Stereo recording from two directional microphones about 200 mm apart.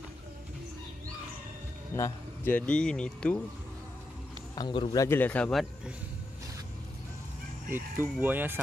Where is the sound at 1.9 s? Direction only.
15° left (ahead or behind).